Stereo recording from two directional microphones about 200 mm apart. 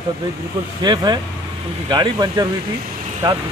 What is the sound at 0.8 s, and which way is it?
A man's voice, 20° right (ahead or behind).